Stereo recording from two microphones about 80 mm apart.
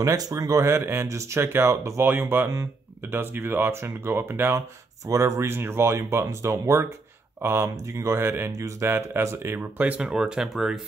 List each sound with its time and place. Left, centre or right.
0.0 s speech: right
4.6 s speech: right; by 10.8 s centre